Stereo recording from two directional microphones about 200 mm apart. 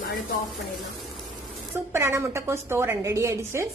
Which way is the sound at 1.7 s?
15° right (ahead or behind).